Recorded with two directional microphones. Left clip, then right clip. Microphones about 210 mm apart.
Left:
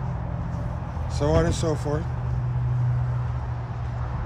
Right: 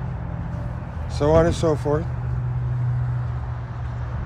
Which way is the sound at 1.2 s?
10° left (ahead or behind).